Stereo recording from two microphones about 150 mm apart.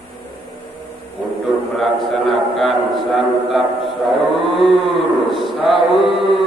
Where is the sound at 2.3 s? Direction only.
Centre (ahead or behind).